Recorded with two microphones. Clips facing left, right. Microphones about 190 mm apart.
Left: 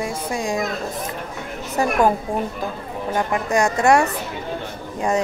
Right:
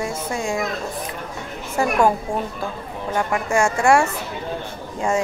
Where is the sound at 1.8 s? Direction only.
20° left (ahead or behind).